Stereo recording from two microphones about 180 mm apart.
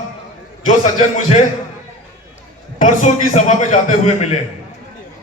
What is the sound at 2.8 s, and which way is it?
Speech, 45° left (ahead or behind).